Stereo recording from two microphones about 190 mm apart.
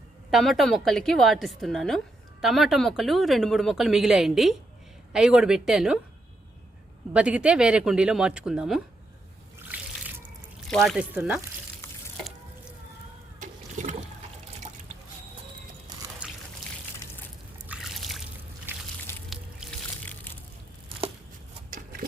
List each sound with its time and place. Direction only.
0.3 s speech: centre (ahead or behind)
7.1 s speech: 5° right (ahead or behind)
9.6 s water: 10° right (ahead or behind)
10.7 s speech: centre (ahead or behind)
13.4 s water: 40° right (ahead or behind)
16.2 s water: 5° right (ahead or behind)
17.0 s a sound: 10° left (ahead or behind)
17.7 s trickle: centre (ahead or behind)
18.7 s a sound: 10° right (ahead or behind)
19.1 s music: 15° left (ahead or behind)